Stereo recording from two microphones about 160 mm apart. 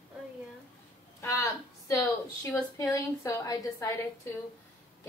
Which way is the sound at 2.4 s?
15° left (ahead or behind).